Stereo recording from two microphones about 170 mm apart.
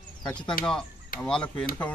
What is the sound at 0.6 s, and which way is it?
Speech, 60° left (ahead or behind).